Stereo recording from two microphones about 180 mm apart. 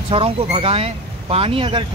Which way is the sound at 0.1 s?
30° right (ahead or behind).